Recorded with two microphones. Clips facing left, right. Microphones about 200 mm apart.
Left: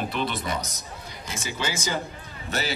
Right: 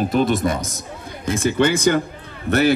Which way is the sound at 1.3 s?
55° right (ahead or behind).